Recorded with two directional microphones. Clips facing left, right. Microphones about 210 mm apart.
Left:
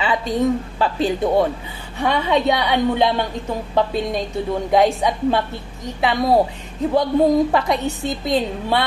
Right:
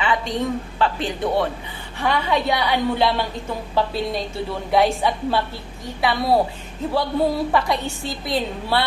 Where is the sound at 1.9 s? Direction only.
20° left (ahead or behind).